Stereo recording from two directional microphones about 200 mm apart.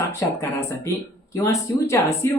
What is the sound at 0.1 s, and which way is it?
A woman's voice, 15° left (ahead or behind).